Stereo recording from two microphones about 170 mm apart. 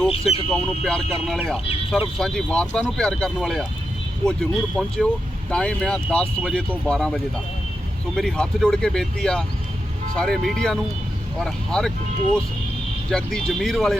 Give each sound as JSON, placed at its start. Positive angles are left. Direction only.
{"t": 0.1, "sound": "speech", "side_deg": 35}
{"t": 0.5, "sound": "speech", "side_deg": 5}
{"t": 13.1, "sound": "speech", "side_deg": 5}